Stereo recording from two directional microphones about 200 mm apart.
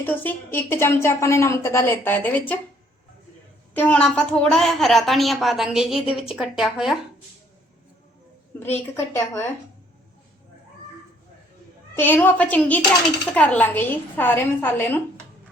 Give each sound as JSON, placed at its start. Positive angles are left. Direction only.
{"t": 0.0, "sound": "a woman's voice", "side_deg": 10}
{"t": 3.8, "sound": "a woman's voice", "side_deg": 5}
{"t": 8.5, "sound": "a woman's voice", "side_deg": 10}
{"t": 11.9, "sound": "a woman's voice", "side_deg": 10}